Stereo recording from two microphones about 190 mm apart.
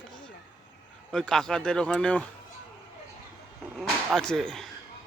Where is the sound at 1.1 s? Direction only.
5° left (ahead or behind).